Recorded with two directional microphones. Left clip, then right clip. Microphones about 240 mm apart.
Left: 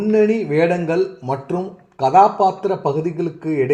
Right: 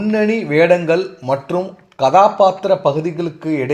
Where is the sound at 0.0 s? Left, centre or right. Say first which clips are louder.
Left 1 dB; right.